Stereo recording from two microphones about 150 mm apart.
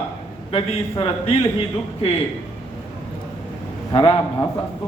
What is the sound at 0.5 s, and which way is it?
Speech, 40° left (ahead or behind).